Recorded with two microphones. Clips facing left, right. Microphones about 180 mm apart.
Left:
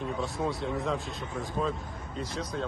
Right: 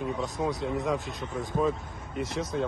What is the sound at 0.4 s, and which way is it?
Speech, 5° right (ahead or behind).